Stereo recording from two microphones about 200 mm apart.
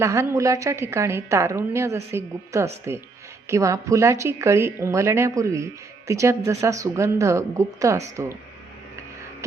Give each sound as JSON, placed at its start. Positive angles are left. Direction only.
{"t": 0.0, "sound": "speech", "side_deg": -15}